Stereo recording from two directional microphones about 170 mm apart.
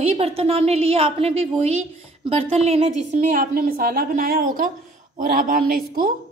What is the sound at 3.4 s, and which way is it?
A woman's voice, 55° right (ahead or behind).